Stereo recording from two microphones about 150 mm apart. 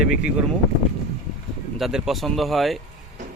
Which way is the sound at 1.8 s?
Centre (ahead or behind).